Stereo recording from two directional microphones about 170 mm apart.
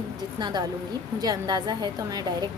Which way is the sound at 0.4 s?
25° right (ahead or behind).